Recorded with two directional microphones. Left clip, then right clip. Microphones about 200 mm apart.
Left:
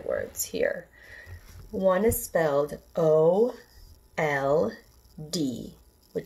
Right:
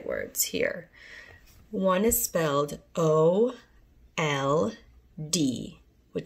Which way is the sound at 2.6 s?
40° right (ahead or behind).